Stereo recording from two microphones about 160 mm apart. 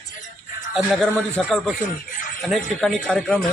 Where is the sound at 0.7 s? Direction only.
5° right (ahead or behind).